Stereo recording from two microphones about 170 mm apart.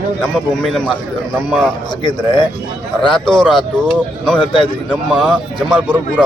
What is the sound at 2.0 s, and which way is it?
A man's voice, 25° left (ahead or behind).